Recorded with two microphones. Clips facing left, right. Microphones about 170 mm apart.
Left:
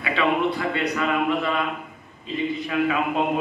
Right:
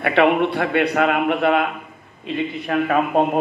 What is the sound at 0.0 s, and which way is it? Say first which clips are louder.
A man's voice: right 6 dB; 65° right (ahead or behind).